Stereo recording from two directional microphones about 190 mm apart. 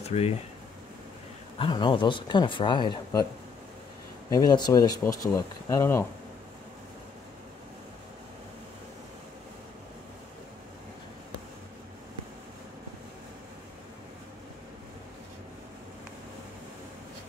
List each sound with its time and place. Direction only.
0.0 s speech: 30° left (ahead or behind)
1.6 s speech: 25° left (ahead or behind)
4.3 s speech: 20° left (ahead or behind)